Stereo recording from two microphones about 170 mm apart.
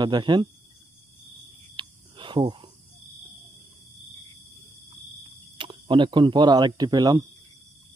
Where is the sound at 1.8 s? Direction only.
30° right (ahead or behind).